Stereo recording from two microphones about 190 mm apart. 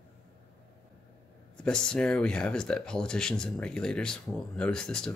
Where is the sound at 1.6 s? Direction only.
5° left (ahead or behind).